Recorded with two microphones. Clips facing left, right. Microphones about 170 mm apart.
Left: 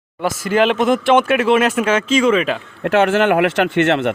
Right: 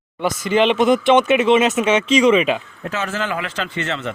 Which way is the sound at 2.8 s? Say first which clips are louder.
Left 11 dB; 65° left (ahead or behind).